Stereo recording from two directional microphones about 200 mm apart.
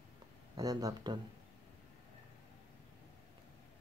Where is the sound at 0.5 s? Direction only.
20° right (ahead or behind).